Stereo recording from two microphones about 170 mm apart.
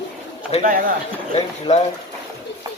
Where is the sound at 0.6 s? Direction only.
55° right (ahead or behind).